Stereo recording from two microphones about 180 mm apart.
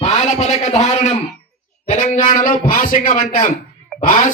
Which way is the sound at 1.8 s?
45° left (ahead or behind).